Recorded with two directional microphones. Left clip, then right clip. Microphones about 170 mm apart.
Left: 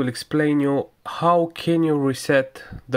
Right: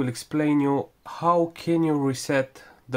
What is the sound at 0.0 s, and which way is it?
Speech, 20° left (ahead or behind).